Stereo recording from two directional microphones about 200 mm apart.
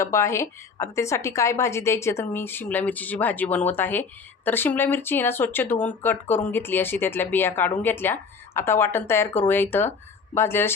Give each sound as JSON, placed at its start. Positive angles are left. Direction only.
{"t": 0.0, "sound": "speech", "side_deg": 15}